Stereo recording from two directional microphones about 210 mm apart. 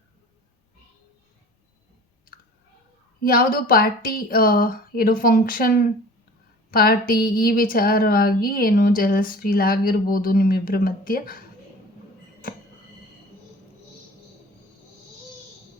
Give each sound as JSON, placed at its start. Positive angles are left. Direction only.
{"t": 3.2, "sound": "speech", "side_deg": 45}